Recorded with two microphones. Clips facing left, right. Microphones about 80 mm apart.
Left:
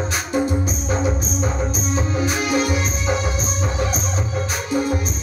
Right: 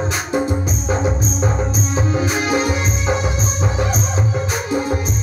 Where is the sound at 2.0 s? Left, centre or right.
Right.